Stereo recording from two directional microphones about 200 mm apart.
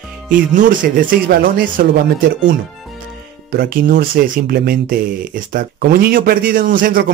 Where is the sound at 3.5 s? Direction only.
50° right (ahead or behind).